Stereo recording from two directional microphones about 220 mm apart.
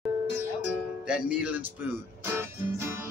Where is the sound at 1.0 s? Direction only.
5° right (ahead or behind).